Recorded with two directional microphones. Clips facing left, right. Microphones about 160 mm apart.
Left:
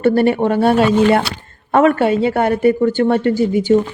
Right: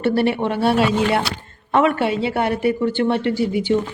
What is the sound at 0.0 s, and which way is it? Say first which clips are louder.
Speech: left 5 dB; 45° left (ahead or behind).